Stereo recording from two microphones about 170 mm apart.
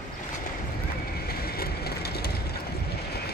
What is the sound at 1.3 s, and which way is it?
Train, 65° left (ahead or behind).